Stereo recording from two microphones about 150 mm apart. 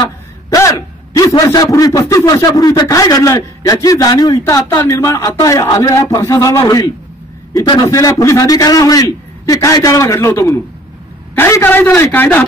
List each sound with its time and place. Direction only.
0.0 s a man's voice: 20° left (ahead or behind)